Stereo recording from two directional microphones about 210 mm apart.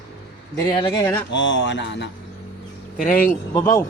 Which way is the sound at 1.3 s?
60° left (ahead or behind).